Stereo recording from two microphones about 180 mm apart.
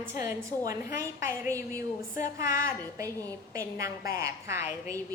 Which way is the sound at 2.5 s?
15° right (ahead or behind).